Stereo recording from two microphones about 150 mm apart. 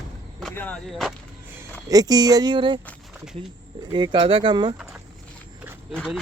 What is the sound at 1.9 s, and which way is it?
Speech, 25° right (ahead or behind).